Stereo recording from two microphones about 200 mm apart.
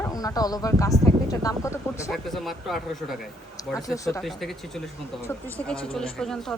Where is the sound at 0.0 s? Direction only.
20° left (ahead or behind).